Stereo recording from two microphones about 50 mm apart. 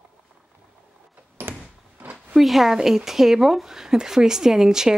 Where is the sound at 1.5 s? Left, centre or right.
Right.